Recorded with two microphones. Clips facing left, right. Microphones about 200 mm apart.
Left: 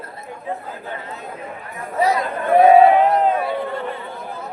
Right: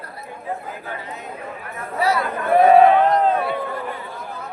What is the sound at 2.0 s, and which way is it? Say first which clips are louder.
Speech: left 2 dB; 20° left (ahead or behind).